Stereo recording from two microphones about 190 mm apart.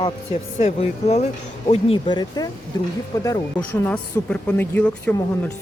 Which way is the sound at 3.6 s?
5° left (ahead or behind).